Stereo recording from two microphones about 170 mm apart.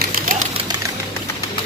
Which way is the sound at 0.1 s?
55° right (ahead or behind).